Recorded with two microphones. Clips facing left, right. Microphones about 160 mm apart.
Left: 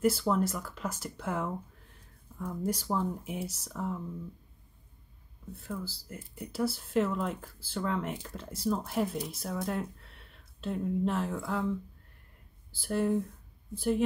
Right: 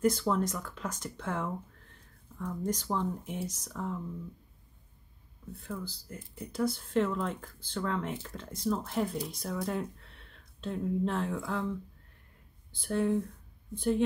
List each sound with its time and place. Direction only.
0.0 s speech: 5° left (ahead or behind)
5.6 s speech: 5° left (ahead or behind)
12.7 s speech: 5° left (ahead or behind)